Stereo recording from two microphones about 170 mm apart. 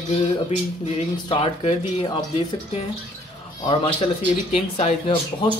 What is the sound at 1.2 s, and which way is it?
Speech, 30° left (ahead or behind).